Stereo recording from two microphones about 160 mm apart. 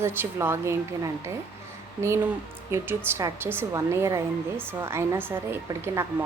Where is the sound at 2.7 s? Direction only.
15° right (ahead or behind).